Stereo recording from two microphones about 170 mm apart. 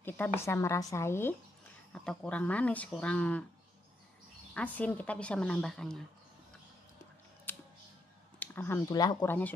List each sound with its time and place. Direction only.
0.0 s speech: 15° left (ahead or behind)
1.9 s speech: 5° left (ahead or behind)
4.6 s a woman's voice: 10° left (ahead or behind)
7.5 s music: 10° left (ahead or behind)
8.4 s speech: 10° left (ahead or behind)